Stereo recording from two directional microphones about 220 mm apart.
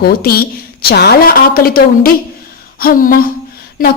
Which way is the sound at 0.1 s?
45° left (ahead or behind).